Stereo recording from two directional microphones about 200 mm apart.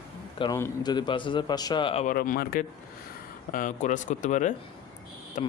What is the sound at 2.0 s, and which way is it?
Speech, 45° left (ahead or behind).